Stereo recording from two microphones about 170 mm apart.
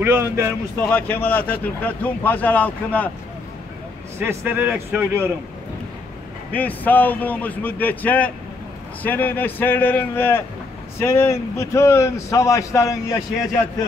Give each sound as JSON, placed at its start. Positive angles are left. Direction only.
{"t": 0.0, "sound": "speech", "side_deg": -15}
{"t": 0.8, "sound": "a man's voice", "side_deg": 10}
{"t": 4.2, "sound": "speech", "side_deg": -10}
{"t": 6.5, "sound": "a man's voice", "side_deg": 10}